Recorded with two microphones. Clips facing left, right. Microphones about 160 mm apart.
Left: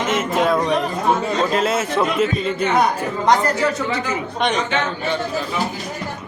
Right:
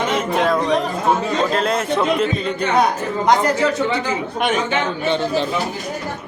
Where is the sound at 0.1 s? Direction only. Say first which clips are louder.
Left 3 dB; 5° left (ahead or behind).